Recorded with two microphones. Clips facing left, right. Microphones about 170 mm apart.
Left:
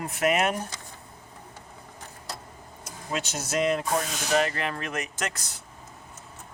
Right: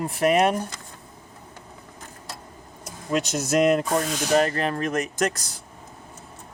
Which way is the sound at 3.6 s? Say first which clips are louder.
Right 5 dB; 50° right (ahead or behind).